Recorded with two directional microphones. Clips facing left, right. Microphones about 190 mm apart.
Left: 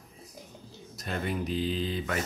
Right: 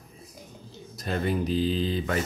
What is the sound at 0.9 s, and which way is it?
Speech, 35° right (ahead or behind).